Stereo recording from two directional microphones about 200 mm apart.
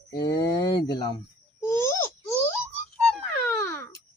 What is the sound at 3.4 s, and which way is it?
Wail, 10° left (ahead or behind).